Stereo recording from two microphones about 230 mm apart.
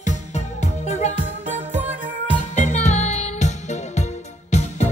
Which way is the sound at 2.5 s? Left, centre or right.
Left.